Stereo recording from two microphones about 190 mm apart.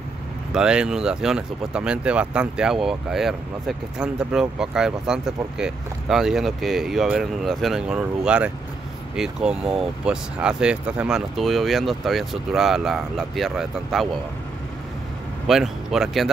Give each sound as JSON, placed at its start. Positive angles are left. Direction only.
{"t": 0.5, "sound": "speech", "side_deg": -5}
{"t": 15.4, "sound": "speech", "side_deg": 0}